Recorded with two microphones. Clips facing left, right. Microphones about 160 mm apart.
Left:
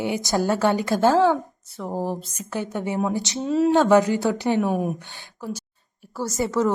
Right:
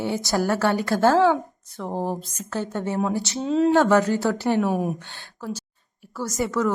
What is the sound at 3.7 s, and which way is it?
Speech, 15° left (ahead or behind).